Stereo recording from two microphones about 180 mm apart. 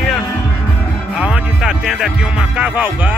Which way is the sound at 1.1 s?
5° right (ahead or behind).